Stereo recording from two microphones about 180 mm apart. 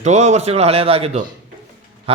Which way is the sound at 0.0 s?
40° right (ahead or behind).